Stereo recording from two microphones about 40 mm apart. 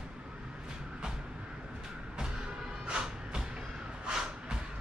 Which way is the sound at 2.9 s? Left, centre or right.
Right.